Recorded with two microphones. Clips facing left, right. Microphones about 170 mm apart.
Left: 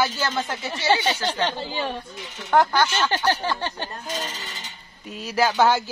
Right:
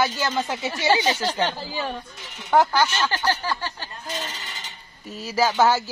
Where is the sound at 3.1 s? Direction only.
20° left (ahead or behind).